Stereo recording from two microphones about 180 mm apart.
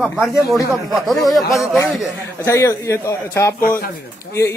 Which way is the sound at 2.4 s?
15° left (ahead or behind).